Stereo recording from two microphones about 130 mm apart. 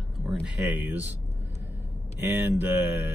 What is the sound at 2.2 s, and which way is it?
Speech, 15° right (ahead or behind).